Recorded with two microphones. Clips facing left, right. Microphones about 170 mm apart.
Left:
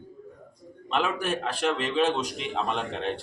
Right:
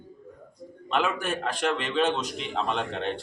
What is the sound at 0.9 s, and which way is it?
A man's voice, 5° left (ahead or behind).